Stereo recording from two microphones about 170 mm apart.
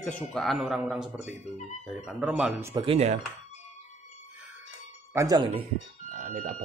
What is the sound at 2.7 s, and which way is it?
Speech, 25° right (ahead or behind).